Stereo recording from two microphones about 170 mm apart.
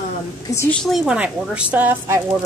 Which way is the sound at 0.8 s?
5° right (ahead or behind).